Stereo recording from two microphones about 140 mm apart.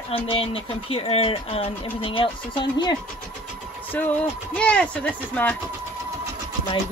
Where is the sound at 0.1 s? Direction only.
45° left (ahead or behind).